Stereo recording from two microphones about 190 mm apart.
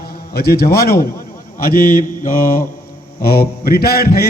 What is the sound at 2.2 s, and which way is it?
A man's voice, 45° left (ahead or behind).